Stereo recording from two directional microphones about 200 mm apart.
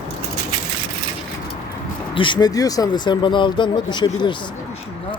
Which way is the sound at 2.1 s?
25° left (ahead or behind).